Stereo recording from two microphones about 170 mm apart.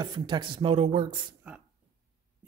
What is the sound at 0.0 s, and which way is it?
Speech, 25° right (ahead or behind).